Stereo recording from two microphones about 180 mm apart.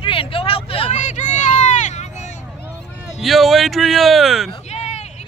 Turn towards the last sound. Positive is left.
turn(degrees=35)  # may be behind; listen again after turning